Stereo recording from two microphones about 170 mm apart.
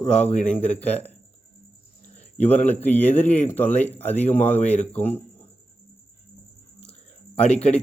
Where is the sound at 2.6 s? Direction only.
10° left (ahead or behind).